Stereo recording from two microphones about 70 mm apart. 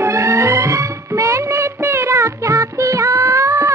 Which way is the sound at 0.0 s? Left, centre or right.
Right.